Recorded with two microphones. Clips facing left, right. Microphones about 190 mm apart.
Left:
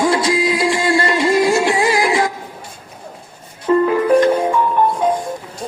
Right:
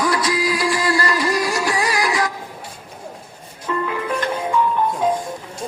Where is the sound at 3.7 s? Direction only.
35° left (ahead or behind).